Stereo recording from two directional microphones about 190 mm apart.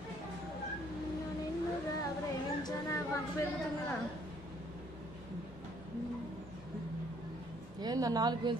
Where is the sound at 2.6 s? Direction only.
15° left (ahead or behind).